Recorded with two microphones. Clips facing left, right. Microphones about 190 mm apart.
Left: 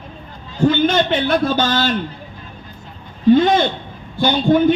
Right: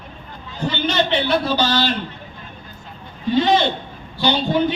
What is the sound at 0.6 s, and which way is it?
A man's voice, 50° left (ahead or behind).